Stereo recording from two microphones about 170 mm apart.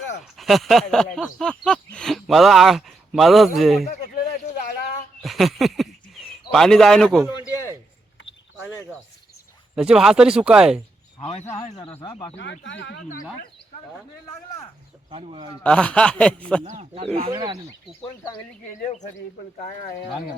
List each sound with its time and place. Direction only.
0.3 s speech: centre (ahead or behind)
3.8 s a sound: 60° left (ahead or behind)
5.2 s speech: centre (ahead or behind)
9.7 s speech: 5° right (ahead or behind)
11.3 s a man's voice: 40° left (ahead or behind)
12.0 s speech: 30° left (ahead or behind)
12.4 s speech: 90° left
13.0 s speech: 55° left (ahead or behind)
15.1 s speech: 30° right (ahead or behind)
15.6 s speech: 5° left (ahead or behind)
16.6 s speech: 40° right (ahead or behind)
17.3 s speech: 20° right (ahead or behind)